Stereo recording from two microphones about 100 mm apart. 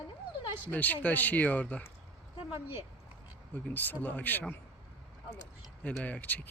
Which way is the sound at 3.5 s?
15° left (ahead or behind).